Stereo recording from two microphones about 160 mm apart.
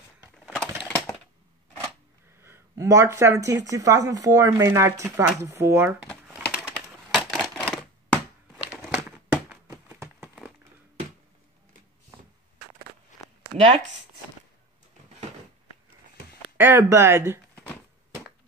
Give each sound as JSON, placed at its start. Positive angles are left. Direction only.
{"t": 0.8, "sound": "typewriter", "side_deg": 10}
{"t": 2.4, "sound": "speech", "side_deg": -15}
{"t": 6.2, "sound": "typewriter", "side_deg": -5}
{"t": 8.6, "sound": "crumpling", "side_deg": 0}
{"t": 9.8, "sound": "a sound", "side_deg": -10}
{"t": 16.5, "sound": "speech", "side_deg": -15}